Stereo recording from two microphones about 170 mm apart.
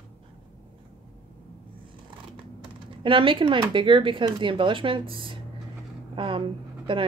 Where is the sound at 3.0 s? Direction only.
30° right (ahead or behind).